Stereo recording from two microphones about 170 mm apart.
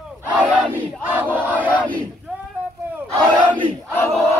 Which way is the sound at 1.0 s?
10° right (ahead or behind).